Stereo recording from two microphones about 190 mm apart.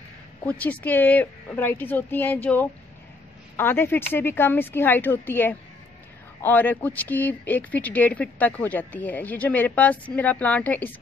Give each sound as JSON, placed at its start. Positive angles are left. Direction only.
{"t": 0.5, "sound": "speech", "side_deg": 10}